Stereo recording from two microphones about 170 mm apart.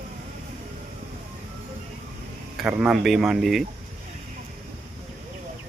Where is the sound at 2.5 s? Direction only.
5° right (ahead or behind).